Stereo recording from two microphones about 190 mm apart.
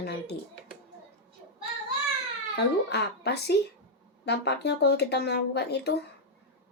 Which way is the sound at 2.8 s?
60° left (ahead or behind).